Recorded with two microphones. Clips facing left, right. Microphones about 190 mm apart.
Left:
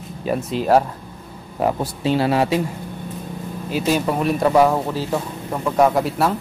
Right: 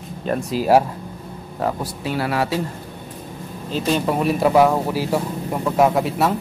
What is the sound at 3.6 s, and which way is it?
A man's voice, 10° left (ahead or behind).